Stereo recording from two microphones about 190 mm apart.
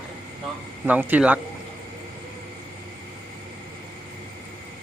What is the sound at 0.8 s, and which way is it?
Speech, 10° right (ahead or behind).